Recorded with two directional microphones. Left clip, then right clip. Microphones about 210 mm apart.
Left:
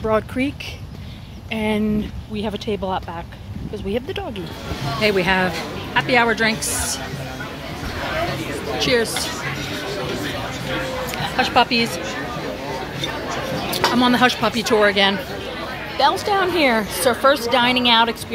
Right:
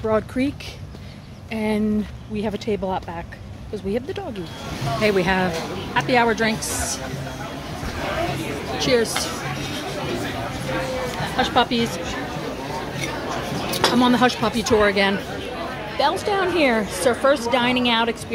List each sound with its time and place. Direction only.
0.0 s a woman's voice: centre (ahead or behind)
1.5 s a woman's voice: centre (ahead or behind)
5.0 s speech: 10° right (ahead or behind)
8.7 s speech: 10° right (ahead or behind)
11.3 s speech: 10° right (ahead or behind)
13.8 s a woman's voice: 5° right (ahead or behind)